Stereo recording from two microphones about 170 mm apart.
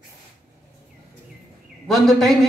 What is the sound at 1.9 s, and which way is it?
Speech, centre (ahead or behind).